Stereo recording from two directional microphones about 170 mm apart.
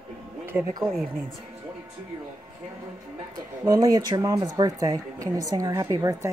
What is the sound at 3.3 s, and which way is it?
Speech, 20° right (ahead or behind).